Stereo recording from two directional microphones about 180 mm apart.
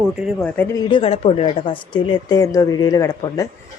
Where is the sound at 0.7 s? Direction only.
30° left (ahead or behind).